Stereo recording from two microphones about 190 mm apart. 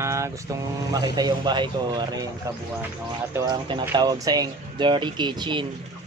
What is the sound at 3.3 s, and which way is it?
Speech, 20° right (ahead or behind).